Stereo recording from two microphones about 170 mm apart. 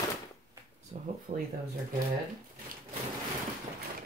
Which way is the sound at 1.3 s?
55° right (ahead or behind).